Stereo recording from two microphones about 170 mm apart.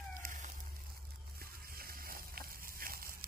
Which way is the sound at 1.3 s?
60° right (ahead or behind).